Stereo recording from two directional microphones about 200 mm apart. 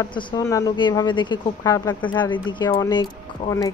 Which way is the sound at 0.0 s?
25° left (ahead or behind).